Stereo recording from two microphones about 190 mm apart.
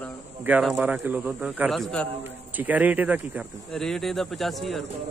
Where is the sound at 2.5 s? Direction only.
10° right (ahead or behind).